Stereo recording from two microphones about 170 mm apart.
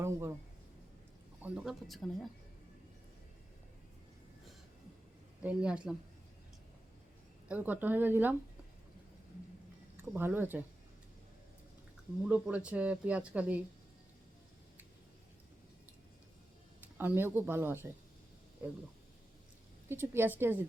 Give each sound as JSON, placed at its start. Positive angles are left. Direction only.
{"t": 0.0, "sound": "a man's voice", "side_deg": -15}
{"t": 1.4, "sound": "speech", "side_deg": -5}
{"t": 5.4, "sound": "speech", "side_deg": -5}
{"t": 7.4, "sound": "speech", "side_deg": -10}
{"t": 10.0, "sound": "speech", "side_deg": -10}
{"t": 12.2, "sound": "speech", "side_deg": -10}
{"t": 17.0, "sound": "speech", "side_deg": -10}
{"t": 19.9, "sound": "speech", "side_deg": -15}